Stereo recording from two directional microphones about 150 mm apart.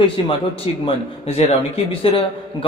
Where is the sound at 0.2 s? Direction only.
35° left (ahead or behind).